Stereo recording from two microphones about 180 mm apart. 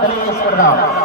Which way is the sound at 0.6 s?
60° left (ahead or behind).